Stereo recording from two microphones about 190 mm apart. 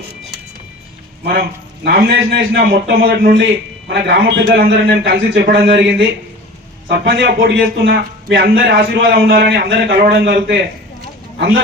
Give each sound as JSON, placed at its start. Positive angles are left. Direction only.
{"t": 1.2, "sound": "a man's voice", "side_deg": -55}
{"t": 5.3, "sound": "a man's voice", "side_deg": -70}
{"t": 11.3, "sound": "speech", "side_deg": -50}